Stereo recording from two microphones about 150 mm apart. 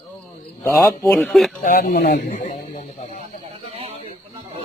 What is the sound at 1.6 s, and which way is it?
Speech, 85° left.